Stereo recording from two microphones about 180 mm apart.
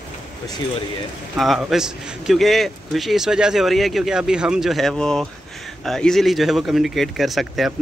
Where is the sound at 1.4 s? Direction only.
Centre (ahead or behind).